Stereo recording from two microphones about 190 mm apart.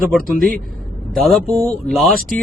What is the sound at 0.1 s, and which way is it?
Speech, centre (ahead or behind).